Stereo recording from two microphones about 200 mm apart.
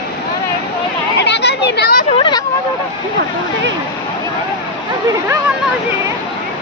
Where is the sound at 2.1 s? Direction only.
25° left (ahead or behind).